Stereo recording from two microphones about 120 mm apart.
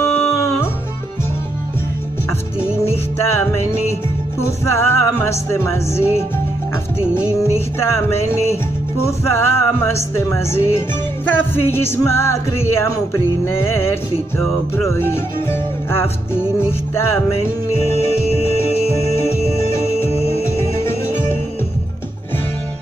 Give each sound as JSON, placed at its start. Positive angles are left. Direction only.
{"t": 0.0, "sound": "music", "side_deg": 25}
{"t": 4.4, "sound": "speech", "side_deg": 20}
{"t": 9.0, "sound": "speech", "side_deg": 20}
{"t": 19.1, "sound": "music", "side_deg": 20}
{"t": 20.1, "sound": "music", "side_deg": 55}
{"t": 20.5, "sound": "music", "side_deg": 20}